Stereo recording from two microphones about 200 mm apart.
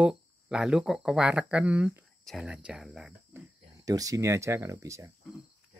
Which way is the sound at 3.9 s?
15° right (ahead or behind).